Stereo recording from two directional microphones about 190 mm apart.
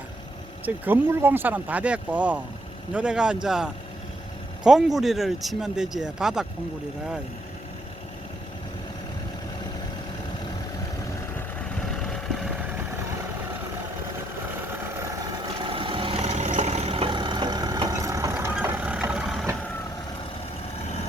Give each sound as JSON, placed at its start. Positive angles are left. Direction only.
{"t": 0.6, "sound": "speech", "side_deg": -10}
{"t": 12.0, "sound": "vehicle", "side_deg": 0}
{"t": 15.2, "sound": "vehicle", "side_deg": -20}